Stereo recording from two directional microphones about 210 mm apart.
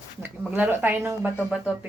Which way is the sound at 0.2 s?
10° right (ahead or behind).